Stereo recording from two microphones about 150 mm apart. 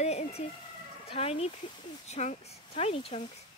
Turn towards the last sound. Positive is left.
turn(degrees=40)  # may be behind; listen again after turning